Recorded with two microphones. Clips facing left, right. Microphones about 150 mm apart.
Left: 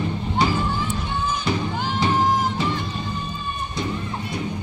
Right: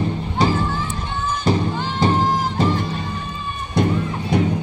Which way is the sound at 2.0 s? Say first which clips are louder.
Right 4 dB; 45° right (ahead or behind).